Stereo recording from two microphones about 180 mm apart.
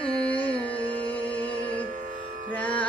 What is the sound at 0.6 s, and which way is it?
Music, 10° left (ahead or behind).